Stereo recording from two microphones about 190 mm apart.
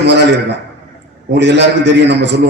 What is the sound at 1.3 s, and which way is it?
A man's voice, 65° right (ahead or behind).